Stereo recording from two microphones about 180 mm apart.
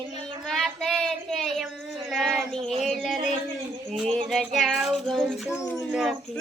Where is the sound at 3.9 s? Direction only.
Centre (ahead or behind).